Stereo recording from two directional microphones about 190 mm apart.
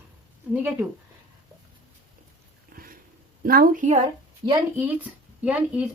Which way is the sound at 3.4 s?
50° right (ahead or behind).